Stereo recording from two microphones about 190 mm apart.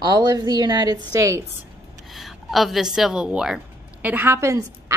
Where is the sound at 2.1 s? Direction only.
Centre (ahead or behind).